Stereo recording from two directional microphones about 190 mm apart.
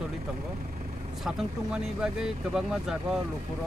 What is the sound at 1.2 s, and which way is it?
Speech, 5° right (ahead or behind).